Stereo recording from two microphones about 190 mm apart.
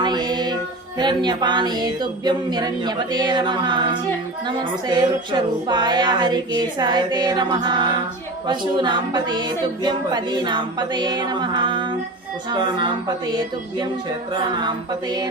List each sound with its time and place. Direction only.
0.0 s music: 20° right (ahead or behind)
0.9 s a woman's voice: 25° right (ahead or behind)
14.6 s a woman's voice: 20° right (ahead or behind)